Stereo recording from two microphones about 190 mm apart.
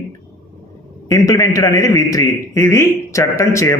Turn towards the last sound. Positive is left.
turn(degrees=15)  # may be behind; listen again after turning